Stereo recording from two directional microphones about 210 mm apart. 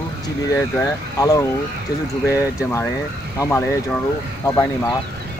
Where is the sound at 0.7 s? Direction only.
15° left (ahead or behind).